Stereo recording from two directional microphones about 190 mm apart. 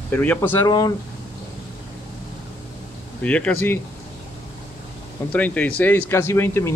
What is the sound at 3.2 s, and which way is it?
Speech, 5° left (ahead or behind).